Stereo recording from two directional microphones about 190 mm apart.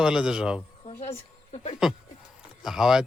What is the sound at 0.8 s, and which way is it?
Speech, 35° left (ahead or behind).